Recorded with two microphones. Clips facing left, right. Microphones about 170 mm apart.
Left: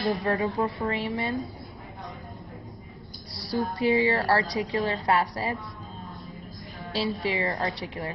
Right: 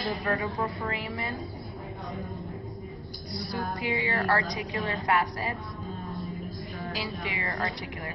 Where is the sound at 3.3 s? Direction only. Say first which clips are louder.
Left 4 dB; 30° left (ahead or behind).